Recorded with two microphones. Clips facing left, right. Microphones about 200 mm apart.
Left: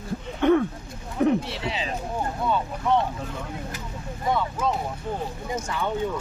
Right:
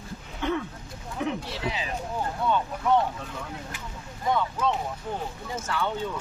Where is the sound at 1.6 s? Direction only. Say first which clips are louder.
Left 2 dB; 25° left (ahead or behind).